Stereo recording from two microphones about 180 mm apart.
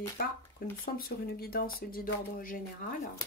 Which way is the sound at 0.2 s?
55° left (ahead or behind).